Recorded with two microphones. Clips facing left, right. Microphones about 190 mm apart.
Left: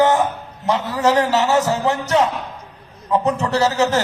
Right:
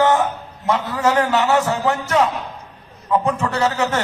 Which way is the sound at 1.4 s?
25° left (ahead or behind).